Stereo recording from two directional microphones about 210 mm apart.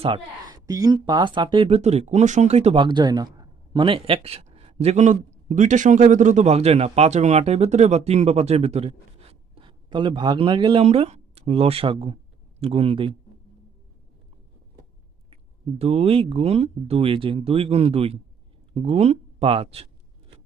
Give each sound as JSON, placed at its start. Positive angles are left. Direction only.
{"t": 0.5, "sound": "speech", "side_deg": -15}
{"t": 15.8, "sound": "speech", "side_deg": -30}